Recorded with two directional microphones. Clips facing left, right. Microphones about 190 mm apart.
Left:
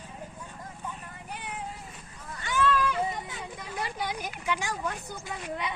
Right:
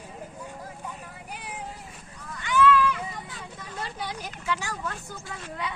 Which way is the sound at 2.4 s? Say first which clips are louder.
Right 5 dB; 40° left (ahead or behind).